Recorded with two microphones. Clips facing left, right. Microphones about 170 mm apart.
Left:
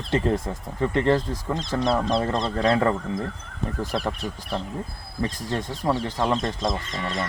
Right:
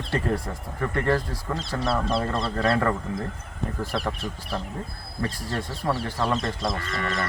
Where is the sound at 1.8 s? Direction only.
5° right (ahead or behind).